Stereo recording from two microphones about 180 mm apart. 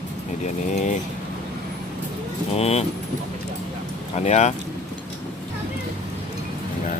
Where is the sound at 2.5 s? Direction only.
35° left (ahead or behind).